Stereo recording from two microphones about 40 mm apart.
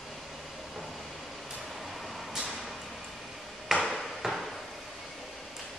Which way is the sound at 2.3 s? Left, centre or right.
Centre.